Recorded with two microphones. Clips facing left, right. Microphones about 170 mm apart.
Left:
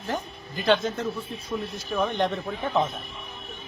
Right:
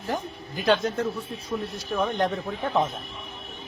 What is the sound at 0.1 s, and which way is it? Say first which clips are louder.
Speech: right 1 dB; centre (ahead or behind).